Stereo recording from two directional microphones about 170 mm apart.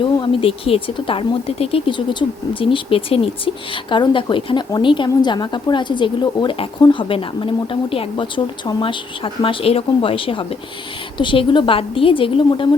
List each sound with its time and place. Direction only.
0.0 s speech: 30° left (ahead or behind)